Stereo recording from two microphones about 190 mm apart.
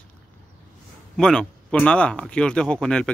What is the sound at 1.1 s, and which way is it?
Speech, centre (ahead or behind).